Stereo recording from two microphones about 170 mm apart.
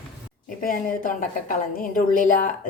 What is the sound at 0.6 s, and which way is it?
A woman's voice, 55° left (ahead or behind).